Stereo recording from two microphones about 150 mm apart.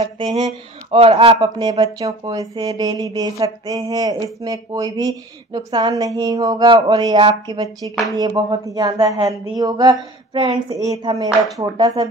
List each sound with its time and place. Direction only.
0.0 s a sound: 45° right (ahead or behind)
0.9 s speech: 40° right (ahead or behind)
10.7 s speech: 25° right (ahead or behind)
11.2 s speech: centre (ahead or behind)
11.7 s speech: 30° right (ahead or behind)